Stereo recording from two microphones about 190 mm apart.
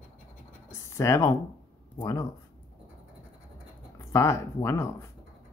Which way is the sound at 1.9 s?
20° left (ahead or behind).